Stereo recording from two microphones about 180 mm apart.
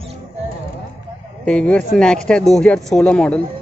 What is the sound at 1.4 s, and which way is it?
Speech, 5° left (ahead or behind).